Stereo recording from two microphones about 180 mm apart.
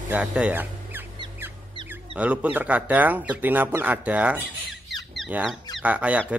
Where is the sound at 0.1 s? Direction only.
5° right (ahead or behind).